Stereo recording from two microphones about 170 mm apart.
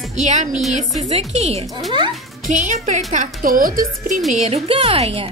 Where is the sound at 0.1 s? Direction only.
40° right (ahead or behind).